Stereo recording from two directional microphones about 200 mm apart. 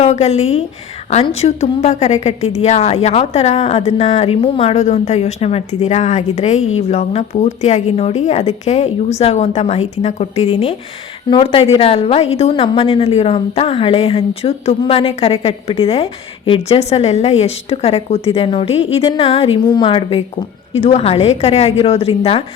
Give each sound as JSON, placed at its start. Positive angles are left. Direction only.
{"t": 0.0, "sound": "a woman's voice", "side_deg": 35}